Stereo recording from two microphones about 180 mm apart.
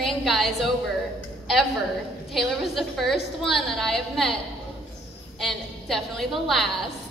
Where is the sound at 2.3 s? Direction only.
Centre (ahead or behind).